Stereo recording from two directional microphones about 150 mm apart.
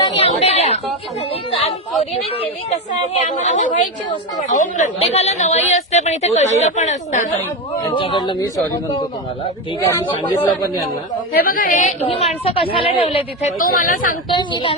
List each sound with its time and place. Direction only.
0.0 s a sound: 35° left (ahead or behind)
3.2 s a woman's voice: 55° left (ahead or behind)
7.9 s a woman's voice: 30° left (ahead or behind)
10.1 s speech: 20° left (ahead or behind)
11.3 s a woman's voice: 75° left (ahead or behind); by 12.1 s 55° left (ahead or behind)
12.1 s a woman's voice: 45° left (ahead or behind)
13.6 s a woman's voice: 65° left (ahead or behind)
14.3 s a woman's voice: 30° left (ahead or behind)